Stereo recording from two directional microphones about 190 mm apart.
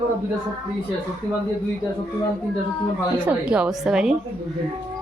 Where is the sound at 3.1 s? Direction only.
5° right (ahead or behind).